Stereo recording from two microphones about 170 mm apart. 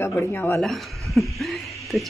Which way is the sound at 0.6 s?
Centre (ahead or behind).